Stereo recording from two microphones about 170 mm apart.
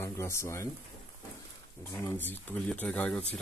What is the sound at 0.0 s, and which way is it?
Speech, 15° left (ahead or behind).